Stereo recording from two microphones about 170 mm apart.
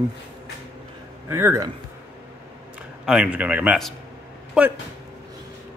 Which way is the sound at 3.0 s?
5° right (ahead or behind).